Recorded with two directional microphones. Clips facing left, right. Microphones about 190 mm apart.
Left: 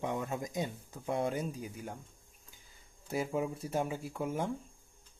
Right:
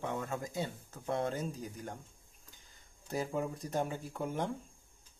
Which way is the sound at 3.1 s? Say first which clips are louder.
Left 2 dB; 10° left (ahead or behind).